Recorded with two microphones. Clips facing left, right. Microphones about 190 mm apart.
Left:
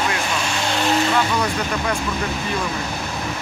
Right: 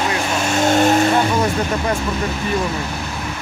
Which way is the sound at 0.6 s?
45° right (ahead or behind).